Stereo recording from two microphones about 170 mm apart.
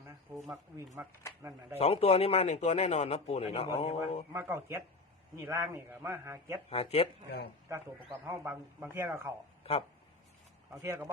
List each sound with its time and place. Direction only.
0.3 s a man's voice: 15° right (ahead or behind)
1.8 s speech: 35° left (ahead or behind)
4.3 s a man's voice: 15° right (ahead or behind)
6.7 s speech: 35° left (ahead or behind)
7.3 s speech: 70° left (ahead or behind)
8.2 s a man's voice: 15° right (ahead or behind)
10.7 s a man's voice: 15° right (ahead or behind)